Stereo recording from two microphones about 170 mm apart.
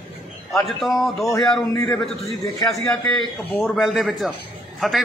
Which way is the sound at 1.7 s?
20° left (ahead or behind).